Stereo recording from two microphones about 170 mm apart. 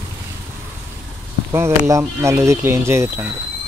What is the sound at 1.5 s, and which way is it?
A man's voice, 15° right (ahead or behind).